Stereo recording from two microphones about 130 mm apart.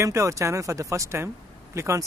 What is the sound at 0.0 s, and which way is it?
Speech, 25° right (ahead or behind).